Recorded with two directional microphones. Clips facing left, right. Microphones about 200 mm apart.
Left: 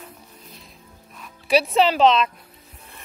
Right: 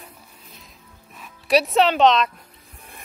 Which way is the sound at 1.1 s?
Centre (ahead or behind).